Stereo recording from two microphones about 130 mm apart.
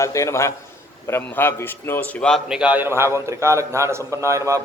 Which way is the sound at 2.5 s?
10° right (ahead or behind).